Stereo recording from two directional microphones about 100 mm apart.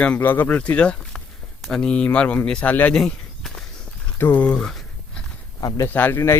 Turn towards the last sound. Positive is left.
turn(degrees=25)  # may be behind; listen again after turning